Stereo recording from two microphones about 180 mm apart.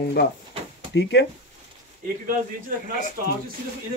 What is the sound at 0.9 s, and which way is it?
Speech, 90° left.